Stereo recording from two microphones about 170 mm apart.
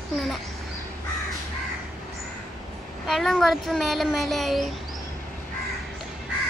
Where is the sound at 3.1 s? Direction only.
Centre (ahead or behind).